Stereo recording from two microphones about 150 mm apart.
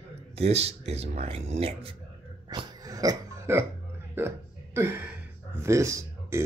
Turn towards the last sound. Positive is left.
turn(degrees=-20)  # may be behind; listen again after turning